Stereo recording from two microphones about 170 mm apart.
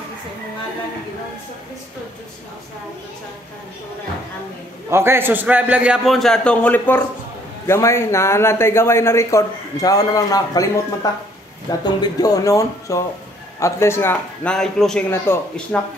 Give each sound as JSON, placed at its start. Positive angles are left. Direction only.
{"t": 4.8, "sound": "a man's voice", "side_deg": -15}
{"t": 15.0, "sound": "a man's voice", "side_deg": 15}